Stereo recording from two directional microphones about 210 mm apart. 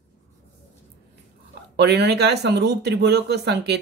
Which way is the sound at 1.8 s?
55° right (ahead or behind).